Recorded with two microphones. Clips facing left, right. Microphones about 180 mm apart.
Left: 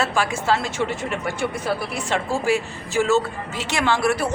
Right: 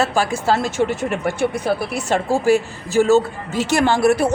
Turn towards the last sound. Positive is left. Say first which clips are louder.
# right 5 dB
turn(degrees=-45)  # may be behind; listen again after turning